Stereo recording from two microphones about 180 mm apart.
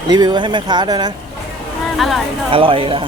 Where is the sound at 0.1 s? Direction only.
25° right (ahead or behind).